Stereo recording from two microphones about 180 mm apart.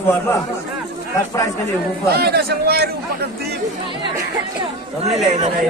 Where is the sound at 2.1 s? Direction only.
60° right (ahead or behind).